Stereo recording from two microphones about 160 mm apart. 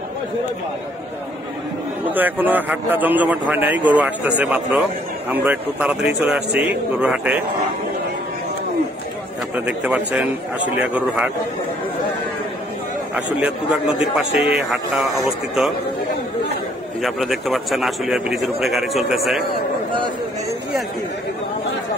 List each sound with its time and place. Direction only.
2.0 s a man's voice: 10° right (ahead or behind)
9.7 s a man's voice: 10° right (ahead or behind)
13.1 s a man's voice: 5° right (ahead or behind)
17.0 s a man's voice: centre (ahead or behind)